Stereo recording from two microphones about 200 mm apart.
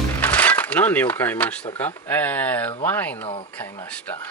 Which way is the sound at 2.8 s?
10° left (ahead or behind).